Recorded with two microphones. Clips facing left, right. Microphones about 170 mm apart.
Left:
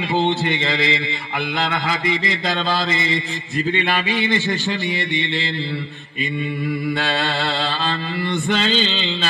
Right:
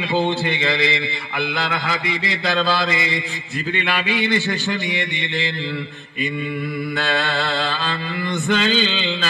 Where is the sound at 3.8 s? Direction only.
45° left (ahead or behind).